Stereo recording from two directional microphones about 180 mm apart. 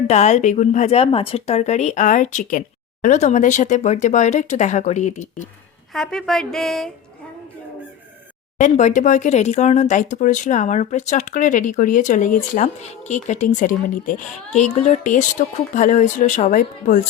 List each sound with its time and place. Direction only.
0.1 s speech: 40° left (ahead or behind)
5.9 s a woman's voice: 5° left (ahead or behind)
8.5 s speech: 45° left (ahead or behind)